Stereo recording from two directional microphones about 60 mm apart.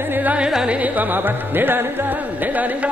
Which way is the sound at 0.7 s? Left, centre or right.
Right.